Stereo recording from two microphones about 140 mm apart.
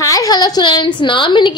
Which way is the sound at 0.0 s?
25° left (ahead or behind).